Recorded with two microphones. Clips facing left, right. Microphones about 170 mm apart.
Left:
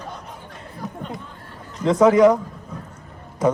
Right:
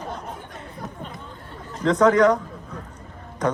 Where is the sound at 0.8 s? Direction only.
45° right (ahead or behind).